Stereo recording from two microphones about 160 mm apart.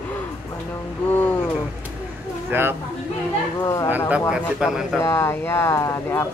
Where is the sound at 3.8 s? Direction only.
10° right (ahead or behind).